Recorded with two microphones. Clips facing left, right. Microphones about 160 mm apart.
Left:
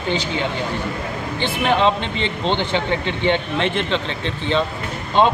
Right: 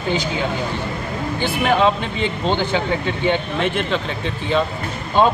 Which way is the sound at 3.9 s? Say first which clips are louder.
Even; 5° right (ahead or behind).